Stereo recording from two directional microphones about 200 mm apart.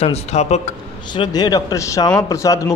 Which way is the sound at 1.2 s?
20° left (ahead or behind).